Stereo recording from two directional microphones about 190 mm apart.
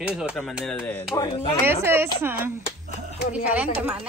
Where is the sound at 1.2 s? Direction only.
25° left (ahead or behind).